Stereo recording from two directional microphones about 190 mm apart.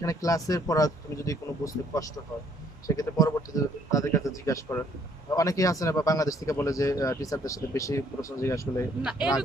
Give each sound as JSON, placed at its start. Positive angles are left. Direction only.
{"t": 0.0, "sound": "speech", "side_deg": 15}